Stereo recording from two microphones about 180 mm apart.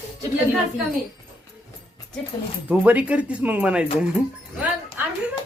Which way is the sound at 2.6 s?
10° right (ahead or behind).